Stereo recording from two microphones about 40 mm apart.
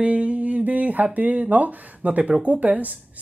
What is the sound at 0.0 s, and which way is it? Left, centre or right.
Speech, right.